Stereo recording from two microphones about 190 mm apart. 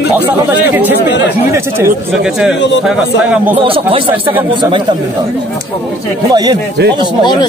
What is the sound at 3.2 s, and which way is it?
Speech, 5° right (ahead or behind).